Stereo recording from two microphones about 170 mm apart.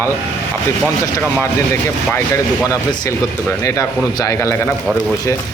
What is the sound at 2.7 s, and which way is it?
Speech, 20° left (ahead or behind).